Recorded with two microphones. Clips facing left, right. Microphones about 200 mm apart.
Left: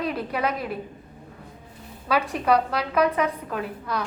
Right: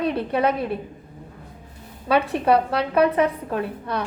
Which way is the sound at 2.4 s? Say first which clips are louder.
Right 1 dB; 30° right (ahead or behind).